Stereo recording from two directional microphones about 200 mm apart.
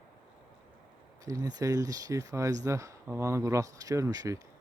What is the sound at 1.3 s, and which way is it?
Speech, 20° right (ahead or behind).